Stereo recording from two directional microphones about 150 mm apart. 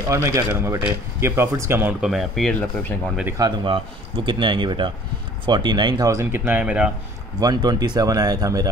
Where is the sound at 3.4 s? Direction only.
30° right (ahead or behind); by 6.9 s 10° right (ahead or behind).